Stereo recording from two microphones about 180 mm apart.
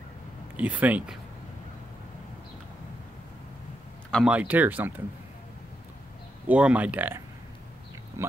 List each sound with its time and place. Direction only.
0.6 s speech: 10° right (ahead or behind)
4.1 s speech: 5° right (ahead or behind)
6.4 s speech: 10° right (ahead or behind)